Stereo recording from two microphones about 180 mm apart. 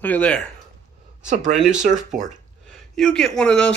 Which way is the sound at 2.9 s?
5° left (ahead or behind).